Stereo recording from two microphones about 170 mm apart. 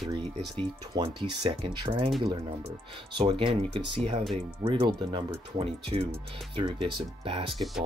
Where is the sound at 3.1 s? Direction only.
30° right (ahead or behind).